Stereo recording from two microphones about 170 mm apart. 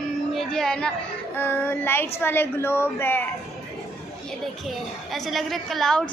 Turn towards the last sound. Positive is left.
turn(degrees=0)  # may be behind; listen again after turning